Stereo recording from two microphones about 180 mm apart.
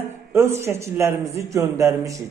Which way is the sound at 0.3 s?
15° right (ahead or behind).